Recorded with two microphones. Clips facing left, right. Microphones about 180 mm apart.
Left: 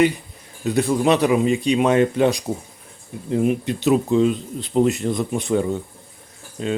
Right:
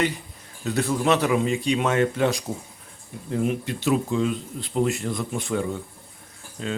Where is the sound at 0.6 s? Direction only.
15° left (ahead or behind).